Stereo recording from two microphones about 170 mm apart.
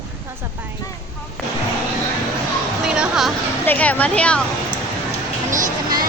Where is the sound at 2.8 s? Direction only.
5° right (ahead or behind).